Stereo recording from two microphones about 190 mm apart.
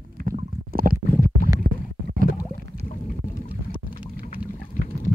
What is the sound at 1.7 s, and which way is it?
Stomach rumble, 65° right (ahead or behind).